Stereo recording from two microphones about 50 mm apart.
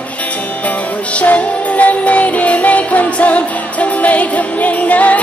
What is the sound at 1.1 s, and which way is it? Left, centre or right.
Music, left.